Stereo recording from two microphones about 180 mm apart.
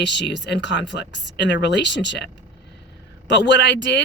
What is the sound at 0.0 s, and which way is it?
Speech, 75° left (ahead or behind).